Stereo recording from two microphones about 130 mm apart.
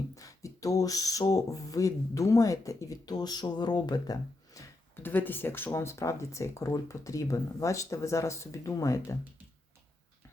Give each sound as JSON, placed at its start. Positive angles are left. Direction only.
{"t": 0.2, "sound": "speech", "side_deg": 25}
{"t": 4.9, "sound": "speech", "side_deg": 15}